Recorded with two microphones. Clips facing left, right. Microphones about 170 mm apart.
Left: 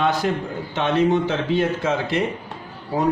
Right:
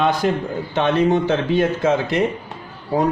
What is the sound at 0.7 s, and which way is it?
Speech, 50° right (ahead or behind).